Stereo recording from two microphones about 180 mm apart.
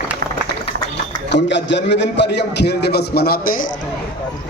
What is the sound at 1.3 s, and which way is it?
A man's voice, 75° left (ahead or behind).